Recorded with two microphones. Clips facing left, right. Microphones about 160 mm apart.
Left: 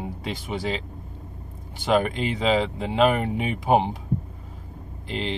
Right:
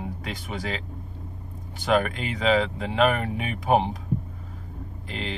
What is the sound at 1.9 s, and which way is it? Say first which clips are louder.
Speech: left 2 dB; 30° left (ahead or behind).